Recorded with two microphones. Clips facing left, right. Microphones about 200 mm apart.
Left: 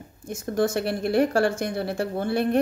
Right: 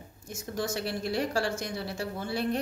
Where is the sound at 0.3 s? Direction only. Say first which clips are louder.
Left 9 dB; 55° left (ahead or behind).